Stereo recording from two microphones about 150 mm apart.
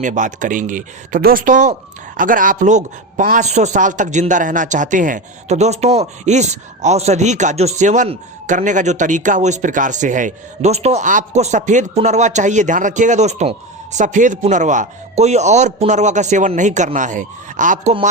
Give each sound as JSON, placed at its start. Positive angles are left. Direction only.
{"t": 0.0, "sound": "a man's voice", "side_deg": -55}